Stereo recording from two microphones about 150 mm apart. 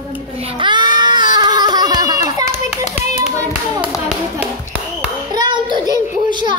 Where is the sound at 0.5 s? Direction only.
30° right (ahead or behind).